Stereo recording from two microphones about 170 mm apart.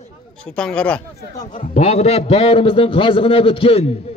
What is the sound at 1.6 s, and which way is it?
A man's voice, 40° left (ahead or behind).